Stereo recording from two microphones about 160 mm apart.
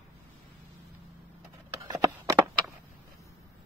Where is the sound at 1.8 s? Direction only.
20° right (ahead or behind).